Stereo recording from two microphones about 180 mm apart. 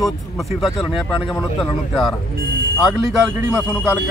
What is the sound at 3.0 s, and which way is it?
Speech, 15° right (ahead or behind).